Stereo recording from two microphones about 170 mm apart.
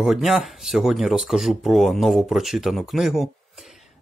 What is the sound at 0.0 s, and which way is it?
Speech, centre (ahead or behind).